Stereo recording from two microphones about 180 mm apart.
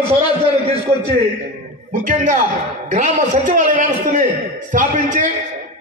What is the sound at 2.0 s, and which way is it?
A man's voice, 45° right (ahead or behind).